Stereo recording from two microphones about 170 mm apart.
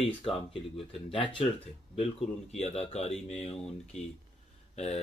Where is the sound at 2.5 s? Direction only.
40° left (ahead or behind).